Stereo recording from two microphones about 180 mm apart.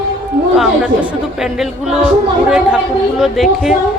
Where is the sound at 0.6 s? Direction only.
5° right (ahead or behind).